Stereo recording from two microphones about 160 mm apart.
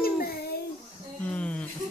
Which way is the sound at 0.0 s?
70° left (ahead or behind).